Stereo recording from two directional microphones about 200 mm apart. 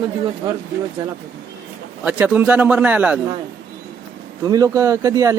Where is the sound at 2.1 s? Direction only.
10° right (ahead or behind).